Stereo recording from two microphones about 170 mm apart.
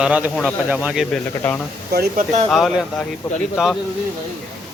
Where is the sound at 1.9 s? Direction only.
65° right (ahead or behind).